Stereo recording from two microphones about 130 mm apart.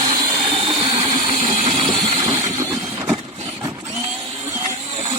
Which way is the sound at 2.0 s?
50° right (ahead or behind).